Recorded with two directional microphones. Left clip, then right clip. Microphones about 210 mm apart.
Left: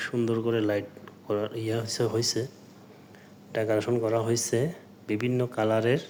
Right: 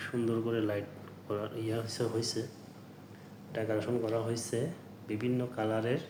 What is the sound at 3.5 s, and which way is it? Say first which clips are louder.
A man's voice: left 7 dB; 50° left (ahead or behind).